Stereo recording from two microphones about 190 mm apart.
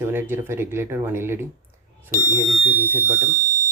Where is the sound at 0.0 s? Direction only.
10° right (ahead or behind).